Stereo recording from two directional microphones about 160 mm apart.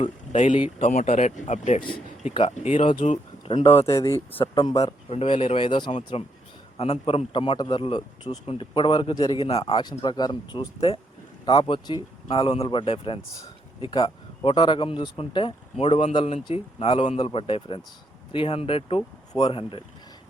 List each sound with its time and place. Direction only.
0.0 s speech: 45° left (ahead or behind)
3.0 s a sound: 50° left (ahead or behind)
3.5 s speech: 40° left (ahead or behind)
3.8 s speech: 20° left (ahead or behind)
4.4 s speech: 30° left (ahead or behind)
5.0 s speech: 35° left (ahead or behind)
9.8 s speech: 25° left (ahead or behind)